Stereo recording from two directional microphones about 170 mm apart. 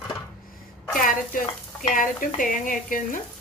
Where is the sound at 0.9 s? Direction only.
50° left (ahead or behind).